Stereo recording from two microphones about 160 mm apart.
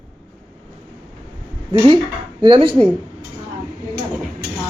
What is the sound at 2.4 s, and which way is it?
Speech, 30° right (ahead or behind).